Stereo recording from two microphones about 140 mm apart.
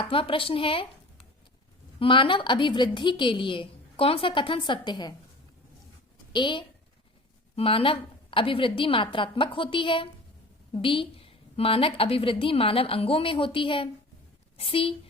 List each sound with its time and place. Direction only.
0.0 s a woman's voice: 40° left (ahead or behind)
6.3 s a woman's voice: 35° left (ahead or behind)